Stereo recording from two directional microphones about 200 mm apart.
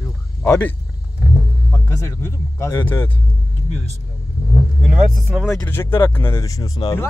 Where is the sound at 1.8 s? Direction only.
15° left (ahead or behind).